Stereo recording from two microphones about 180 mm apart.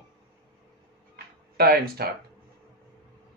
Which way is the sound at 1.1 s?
60° right (ahead or behind).